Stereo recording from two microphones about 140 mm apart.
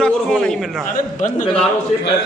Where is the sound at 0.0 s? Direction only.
5° left (ahead or behind).